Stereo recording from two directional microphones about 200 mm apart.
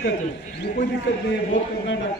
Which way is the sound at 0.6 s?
55° left (ahead or behind).